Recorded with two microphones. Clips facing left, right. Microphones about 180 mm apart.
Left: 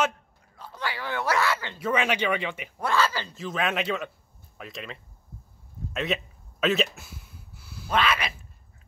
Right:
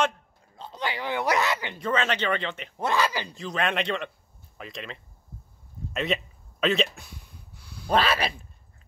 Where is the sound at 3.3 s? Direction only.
Centre (ahead or behind).